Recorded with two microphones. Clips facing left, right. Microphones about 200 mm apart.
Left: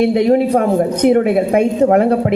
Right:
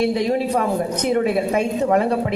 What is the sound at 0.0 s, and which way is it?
Speech, 60° left (ahead or behind).